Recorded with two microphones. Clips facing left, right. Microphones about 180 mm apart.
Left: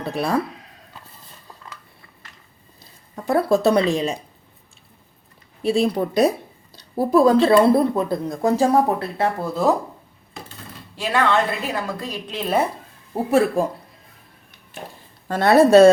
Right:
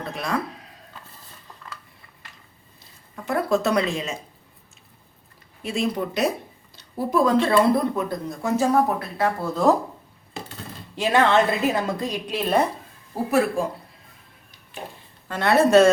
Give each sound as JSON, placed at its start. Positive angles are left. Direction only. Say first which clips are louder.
{"t": 0.0, "sound": "speech", "louder": "left 6 dB", "side_deg": 30}
{"t": 3.2, "sound": "speech", "louder": "left 5 dB", "side_deg": 35}
{"t": 5.6, "sound": "speech", "louder": "left 6 dB", "side_deg": 35}
{"t": 9.4, "sound": "speech", "louder": "right 1 dB", "side_deg": 5}
{"t": 10.9, "sound": "a woman's voice", "louder": "right 1 dB", "side_deg": -20}
{"t": 12.3, "sound": "speech", "louder": "even", "side_deg": 0}
{"t": 13.1, "sound": "speech", "louder": "left 3 dB", "side_deg": 25}
{"t": 15.3, "sound": "speech", "louder": "left 4 dB", "side_deg": 40}